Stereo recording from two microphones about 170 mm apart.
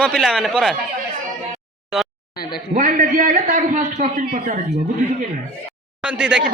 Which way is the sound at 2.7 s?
50° right (ahead or behind).